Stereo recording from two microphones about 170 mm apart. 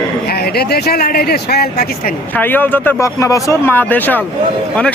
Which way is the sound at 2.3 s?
10° left (ahead or behind).